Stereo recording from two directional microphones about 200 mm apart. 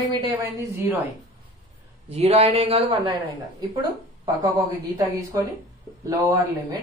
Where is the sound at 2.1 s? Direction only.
30° right (ahead or behind).